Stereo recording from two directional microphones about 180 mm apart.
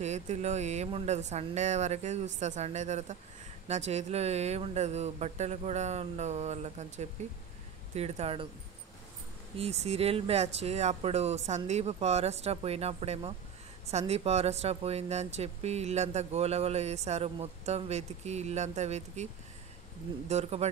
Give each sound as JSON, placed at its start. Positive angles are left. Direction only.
{"t": 0.0, "sound": "speech", "side_deg": -40}
{"t": 9.6, "sound": "speech", "side_deg": -35}
{"t": 20.2, "sound": "speech", "side_deg": -40}